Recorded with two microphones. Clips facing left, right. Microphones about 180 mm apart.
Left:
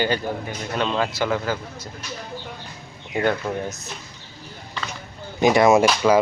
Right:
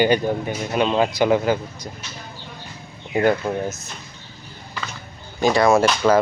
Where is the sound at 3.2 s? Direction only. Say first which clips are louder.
Right 3 dB; 5° right (ahead or behind).